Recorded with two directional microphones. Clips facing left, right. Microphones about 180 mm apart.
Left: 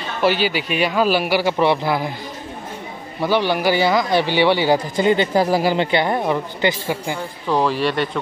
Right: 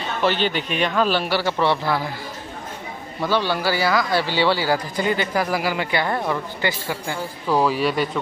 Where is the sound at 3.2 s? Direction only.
15° left (ahead or behind).